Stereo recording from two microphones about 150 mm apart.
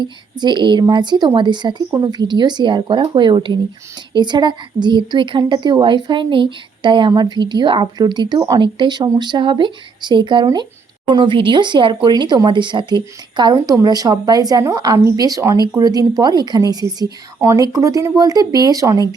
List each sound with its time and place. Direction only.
0.0 s a woman's voice: 30° right (ahead or behind)